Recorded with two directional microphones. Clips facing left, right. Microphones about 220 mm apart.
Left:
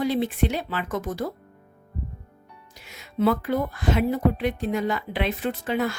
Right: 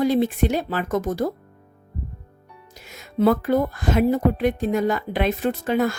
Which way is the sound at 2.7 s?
45° right (ahead or behind).